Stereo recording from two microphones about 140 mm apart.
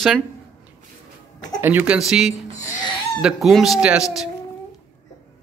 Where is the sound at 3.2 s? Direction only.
Centre (ahead or behind).